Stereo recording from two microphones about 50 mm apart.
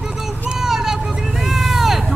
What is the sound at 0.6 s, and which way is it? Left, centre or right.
Vehicle, centre.